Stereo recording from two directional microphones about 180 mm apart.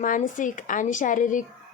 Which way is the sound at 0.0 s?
50° left (ahead or behind).